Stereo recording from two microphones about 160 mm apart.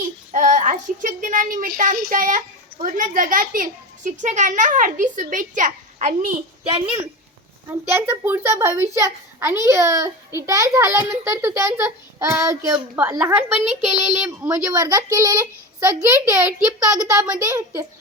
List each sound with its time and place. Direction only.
0.3 s a child's voice: 50° right (ahead or behind)
7.9 s a child's voice: 15° right (ahead or behind)
13.8 s child singing: 5° right (ahead or behind)
14.3 s a child's voice: 20° right (ahead or behind)